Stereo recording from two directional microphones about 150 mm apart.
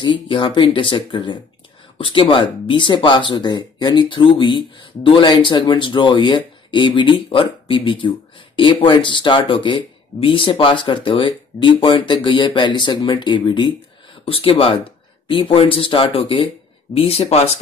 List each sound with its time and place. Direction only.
0.0 s speech: 35° left (ahead or behind)